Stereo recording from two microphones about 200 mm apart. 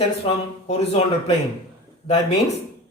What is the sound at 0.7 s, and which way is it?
Speech, 30° left (ahead or behind).